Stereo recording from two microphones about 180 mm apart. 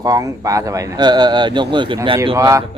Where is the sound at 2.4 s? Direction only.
15° right (ahead or behind).